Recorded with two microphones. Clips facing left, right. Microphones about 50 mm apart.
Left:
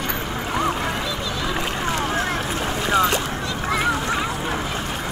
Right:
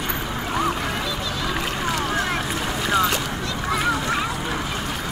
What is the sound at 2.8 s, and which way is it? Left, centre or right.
Boat, left.